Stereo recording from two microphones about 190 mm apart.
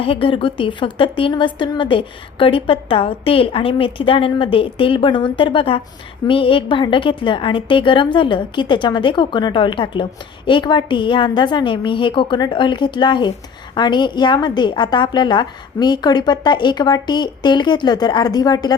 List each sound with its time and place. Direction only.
0.0 s a woman's voice: 30° left (ahead or behind)